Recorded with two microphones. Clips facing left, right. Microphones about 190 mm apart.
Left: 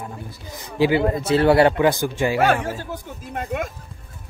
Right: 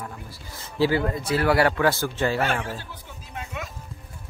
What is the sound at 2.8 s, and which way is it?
Speech, 50° left (ahead or behind).